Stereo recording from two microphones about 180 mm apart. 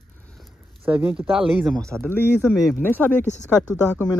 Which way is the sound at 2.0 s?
10° left (ahead or behind).